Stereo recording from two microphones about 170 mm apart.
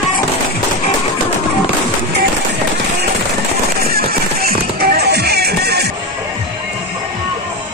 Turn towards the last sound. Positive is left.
turn(degrees=-75)  # may be behind; listen again after turning